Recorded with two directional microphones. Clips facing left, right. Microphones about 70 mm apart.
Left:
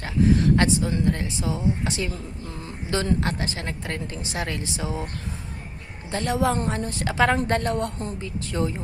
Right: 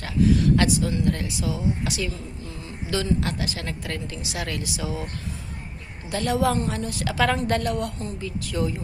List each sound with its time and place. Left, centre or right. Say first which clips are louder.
0.0 s a woman's voice: even; left
6.1 s a woman's voice: right 1 dB; left